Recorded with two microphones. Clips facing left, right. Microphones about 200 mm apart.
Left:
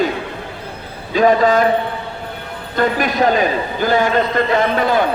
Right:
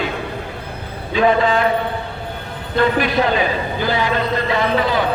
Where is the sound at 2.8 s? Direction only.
45° left (ahead or behind).